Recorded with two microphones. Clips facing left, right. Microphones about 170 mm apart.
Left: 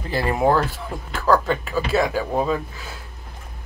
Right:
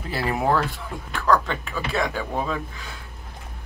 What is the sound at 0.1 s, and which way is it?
Speech, centre (ahead or behind).